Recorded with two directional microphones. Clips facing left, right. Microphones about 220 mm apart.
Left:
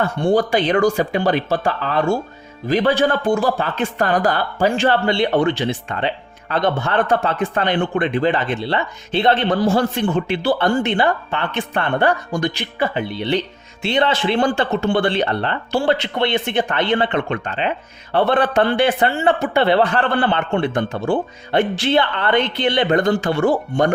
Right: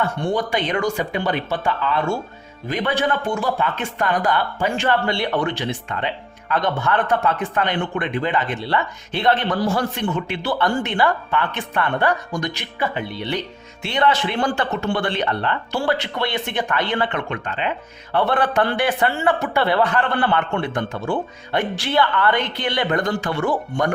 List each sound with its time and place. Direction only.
0.0 s speech: 30° left (ahead or behind)